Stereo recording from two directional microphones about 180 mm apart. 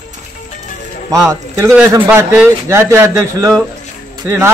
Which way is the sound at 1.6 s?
10° right (ahead or behind).